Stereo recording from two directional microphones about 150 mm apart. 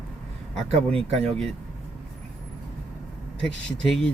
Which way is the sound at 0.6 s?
40° right (ahead or behind).